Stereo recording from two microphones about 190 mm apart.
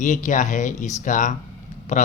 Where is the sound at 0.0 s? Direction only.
40° left (ahead or behind).